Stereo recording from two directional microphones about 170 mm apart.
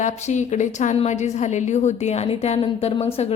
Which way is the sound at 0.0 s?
45° left (ahead or behind).